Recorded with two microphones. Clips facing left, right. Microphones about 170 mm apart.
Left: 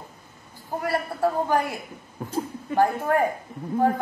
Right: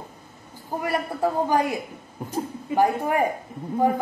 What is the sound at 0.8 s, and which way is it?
A woman's voice, 15° right (ahead or behind).